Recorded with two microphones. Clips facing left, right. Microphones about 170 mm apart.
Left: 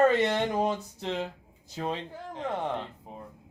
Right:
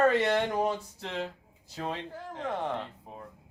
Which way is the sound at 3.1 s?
20° left (ahead or behind).